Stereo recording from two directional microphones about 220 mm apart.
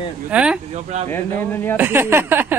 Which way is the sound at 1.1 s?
10° left (ahead or behind).